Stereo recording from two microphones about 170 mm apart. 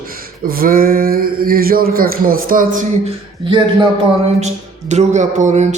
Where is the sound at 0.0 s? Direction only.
60° right (ahead or behind).